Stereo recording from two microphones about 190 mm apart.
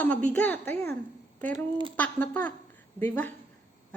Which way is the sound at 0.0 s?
10° left (ahead or behind).